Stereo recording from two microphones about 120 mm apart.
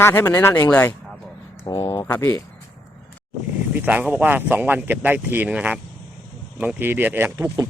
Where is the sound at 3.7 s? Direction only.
15° right (ahead or behind).